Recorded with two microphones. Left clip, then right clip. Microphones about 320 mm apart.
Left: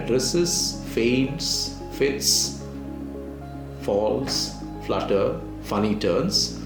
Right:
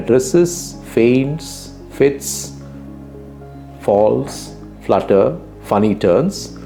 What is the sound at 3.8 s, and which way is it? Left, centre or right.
Speech, right.